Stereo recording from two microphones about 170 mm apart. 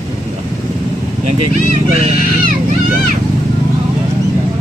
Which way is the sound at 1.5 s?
40° right (ahead or behind).